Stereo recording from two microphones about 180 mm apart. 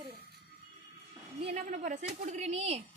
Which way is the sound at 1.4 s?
35° right (ahead or behind).